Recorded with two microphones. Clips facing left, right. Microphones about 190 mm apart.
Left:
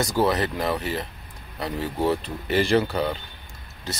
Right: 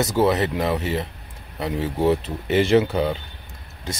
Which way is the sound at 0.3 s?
20° right (ahead or behind).